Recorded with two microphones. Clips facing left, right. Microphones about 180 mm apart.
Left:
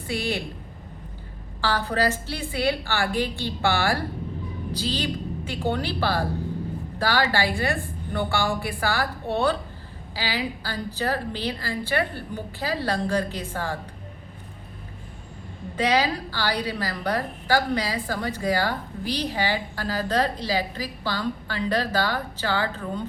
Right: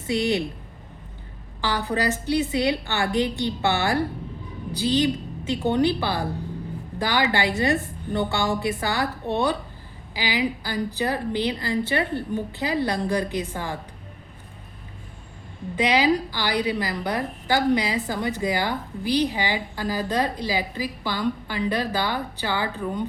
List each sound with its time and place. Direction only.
0.1 s a woman's voice: 20° right (ahead or behind)
1.6 s a woman's voice: 15° right (ahead or behind)
15.7 s a woman's voice: 15° right (ahead or behind)